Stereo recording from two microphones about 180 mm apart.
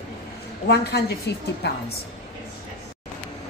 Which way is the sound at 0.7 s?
65° left (ahead or behind).